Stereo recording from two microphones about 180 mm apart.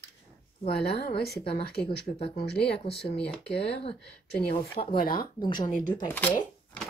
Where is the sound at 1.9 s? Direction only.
35° left (ahead or behind).